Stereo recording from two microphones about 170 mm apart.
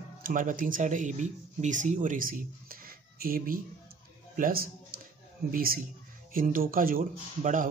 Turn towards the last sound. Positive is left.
turn(degrees=-50)  # may be behind; listen again after turning